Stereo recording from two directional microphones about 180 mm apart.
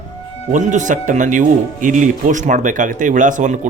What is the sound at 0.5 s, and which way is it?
Speech, 45° right (ahead or behind).